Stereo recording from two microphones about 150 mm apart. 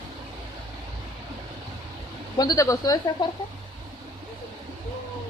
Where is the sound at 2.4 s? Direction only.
25° left (ahead or behind).